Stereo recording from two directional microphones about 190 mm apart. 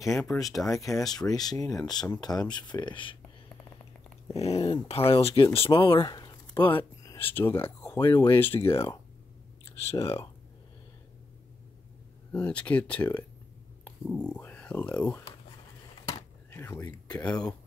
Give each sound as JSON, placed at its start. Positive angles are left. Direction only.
{"t": 0.0, "sound": "speech", "side_deg": 15}
{"t": 0.3, "sound": "speech", "side_deg": 0}
{"t": 0.7, "sound": "speech", "side_deg": 15}
{"t": 4.3, "sound": "speech", "side_deg": 30}
{"t": 9.9, "sound": "speech", "side_deg": 15}
{"t": 12.3, "sound": "speech", "side_deg": 5}
{"t": 16.1, "sound": "a sound", "side_deg": 15}